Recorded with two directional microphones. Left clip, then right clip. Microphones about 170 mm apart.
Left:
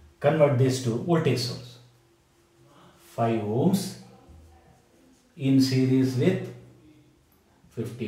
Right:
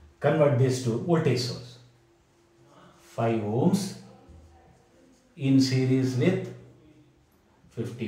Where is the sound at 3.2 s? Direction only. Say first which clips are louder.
Left 1 dB; 15° left (ahead or behind).